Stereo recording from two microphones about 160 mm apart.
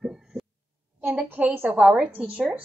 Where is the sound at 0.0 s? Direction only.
5° right (ahead or behind).